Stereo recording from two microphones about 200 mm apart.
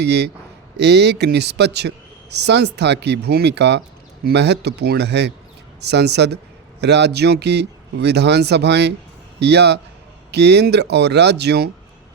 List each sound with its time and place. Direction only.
0.0 s speech: 55° right (ahead or behind)